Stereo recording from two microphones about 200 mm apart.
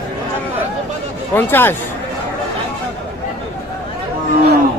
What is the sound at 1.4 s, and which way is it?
Speech, 10° left (ahead or behind).